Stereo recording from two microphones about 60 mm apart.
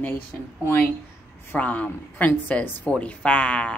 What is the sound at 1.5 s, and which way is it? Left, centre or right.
Speech, left.